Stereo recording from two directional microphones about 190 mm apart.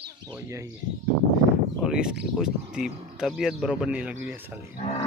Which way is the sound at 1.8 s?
5° right (ahead or behind).